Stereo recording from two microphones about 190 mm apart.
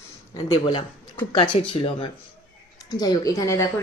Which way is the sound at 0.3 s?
20° left (ahead or behind).